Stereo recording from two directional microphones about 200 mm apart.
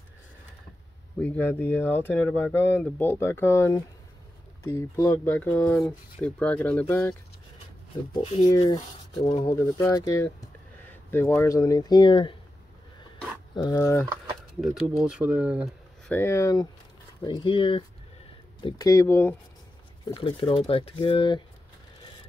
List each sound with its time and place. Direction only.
1.2 s speech: 10° left (ahead or behind)
8.1 s speech: 25° left (ahead or behind)
9.8 s speech: 15° left (ahead or behind)
13.6 s speech: 15° left (ahead or behind)
14.6 s speech: centre (ahead or behind)
16.1 s speech: 10° left (ahead or behind)
20.2 s speech: 25° left (ahead or behind)